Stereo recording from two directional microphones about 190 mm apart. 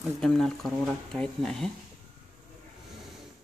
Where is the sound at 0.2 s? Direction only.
5° left (ahead or behind).